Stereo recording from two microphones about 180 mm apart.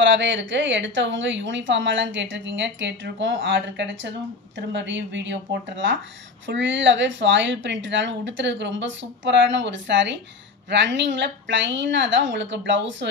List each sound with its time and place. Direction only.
0.0 s a woman's voice: 90° right